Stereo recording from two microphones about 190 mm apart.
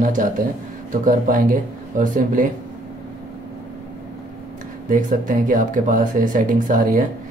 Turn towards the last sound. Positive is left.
turn(degrees=-45)  # may be behind; listen again after turning